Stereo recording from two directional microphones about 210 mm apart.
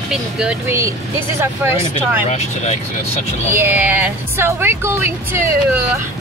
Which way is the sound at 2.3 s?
35° left (ahead or behind).